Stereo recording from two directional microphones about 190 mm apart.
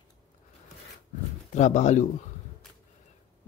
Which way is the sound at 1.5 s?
40° left (ahead or behind).